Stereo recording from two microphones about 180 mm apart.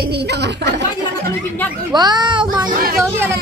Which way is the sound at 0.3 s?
70° right (ahead or behind).